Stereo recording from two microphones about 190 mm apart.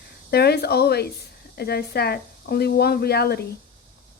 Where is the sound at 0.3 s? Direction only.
55° left (ahead or behind).